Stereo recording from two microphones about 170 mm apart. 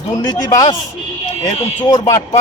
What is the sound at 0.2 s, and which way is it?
Speech, 25° left (ahead or behind).